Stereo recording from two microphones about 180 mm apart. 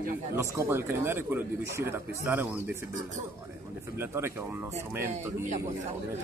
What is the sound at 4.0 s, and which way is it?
Speech, 15° right (ahead or behind).